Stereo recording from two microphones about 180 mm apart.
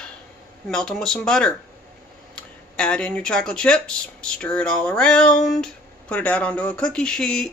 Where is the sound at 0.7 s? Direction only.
5° left (ahead or behind).